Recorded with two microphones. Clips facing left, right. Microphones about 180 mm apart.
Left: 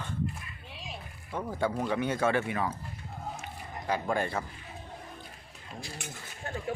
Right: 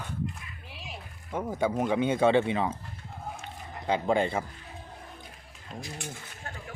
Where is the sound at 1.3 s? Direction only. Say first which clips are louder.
Right 3 dB; 15° right (ahead or behind).